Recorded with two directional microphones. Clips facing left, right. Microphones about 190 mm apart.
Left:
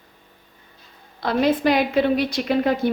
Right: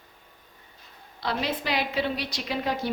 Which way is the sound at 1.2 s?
50° left (ahead or behind).